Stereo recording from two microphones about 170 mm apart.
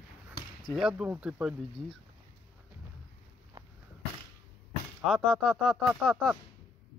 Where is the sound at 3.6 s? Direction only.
20° right (ahead or behind).